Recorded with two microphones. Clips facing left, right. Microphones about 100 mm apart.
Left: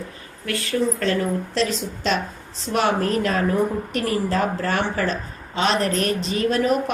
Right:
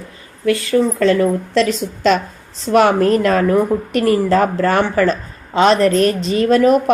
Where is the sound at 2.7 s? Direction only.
85° right.